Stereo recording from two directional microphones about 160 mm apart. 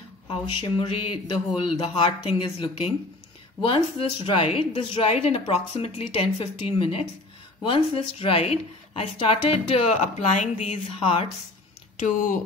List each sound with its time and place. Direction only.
0.3 s a woman's voice: 35° left (ahead or behind)
12.0 s speech: 55° left (ahead or behind)